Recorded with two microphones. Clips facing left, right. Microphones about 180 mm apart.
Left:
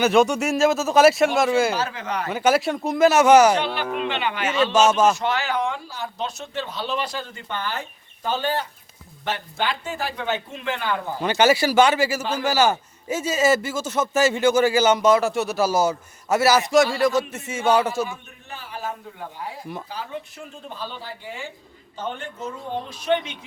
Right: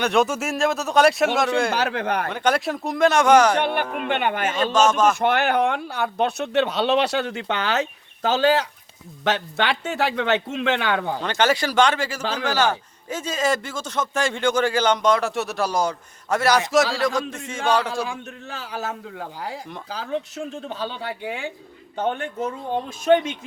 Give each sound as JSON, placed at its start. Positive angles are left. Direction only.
{"t": 0.0, "sound": "a man's voice", "side_deg": 0}
{"t": 1.7, "sound": "speech", "side_deg": -65}
{"t": 2.3, "sound": "a man's voice", "side_deg": 5}
{"t": 3.5, "sound": "speech", "side_deg": -55}
{"t": 4.7, "sound": "speech", "side_deg": 10}
{"t": 5.2, "sound": "speech", "side_deg": -60}
{"t": 11.2, "sound": "a man's voice", "side_deg": 10}
{"t": 18.1, "sound": "speech", "side_deg": -90}